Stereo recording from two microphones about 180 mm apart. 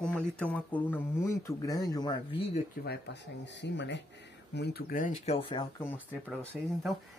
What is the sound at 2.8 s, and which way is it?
Speech, 65° left (ahead or behind).